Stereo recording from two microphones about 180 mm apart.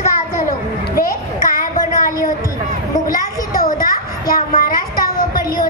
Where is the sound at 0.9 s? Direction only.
55° left (ahead or behind).